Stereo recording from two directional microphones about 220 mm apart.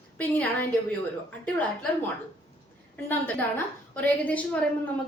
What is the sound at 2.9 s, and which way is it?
A woman's voice, 10° left (ahead or behind).